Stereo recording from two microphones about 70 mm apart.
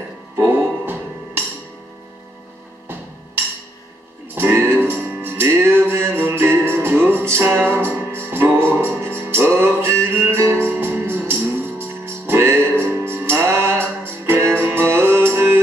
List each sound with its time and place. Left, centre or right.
0.5 s music: right
4.4 s music: right